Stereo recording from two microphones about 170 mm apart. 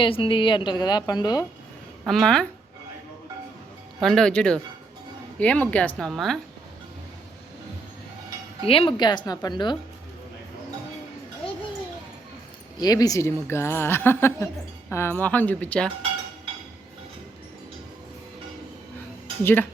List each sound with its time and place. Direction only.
0.0 s a woman's voice: 30° left (ahead or behind)
2.0 s speech: centre (ahead or behind)
4.0 s a woman's voice: 5° left (ahead or behind)
8.6 s a woman's voice: 30° left (ahead or behind)
12.7 s a woman's voice: 20° left (ahead or behind)